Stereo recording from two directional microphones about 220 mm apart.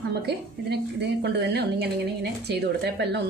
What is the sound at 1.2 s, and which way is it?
A woman's voice, 50° right (ahead or behind).